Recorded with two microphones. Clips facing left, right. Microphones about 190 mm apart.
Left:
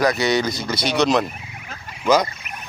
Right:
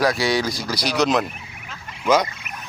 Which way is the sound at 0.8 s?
25° left (ahead or behind).